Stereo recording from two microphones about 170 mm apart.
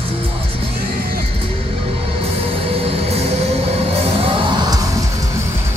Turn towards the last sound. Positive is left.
turn(degrees=-25)  # may be behind; listen again after turning